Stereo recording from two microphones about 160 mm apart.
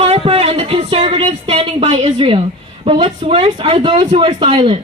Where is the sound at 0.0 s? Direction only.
40° right (ahead or behind).